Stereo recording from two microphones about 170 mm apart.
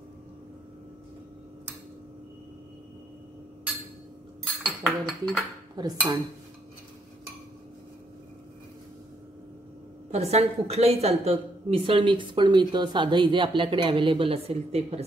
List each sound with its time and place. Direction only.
4.5 s dishes: centre (ahead or behind)
5.8 s speech: 25° right (ahead or behind)
10.1 s a woman's voice: 40° right (ahead or behind)